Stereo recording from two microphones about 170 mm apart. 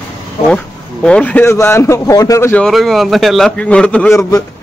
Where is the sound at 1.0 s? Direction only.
5° left (ahead or behind).